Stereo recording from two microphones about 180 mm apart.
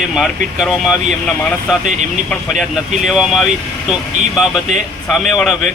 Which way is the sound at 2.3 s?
Centre (ahead or behind).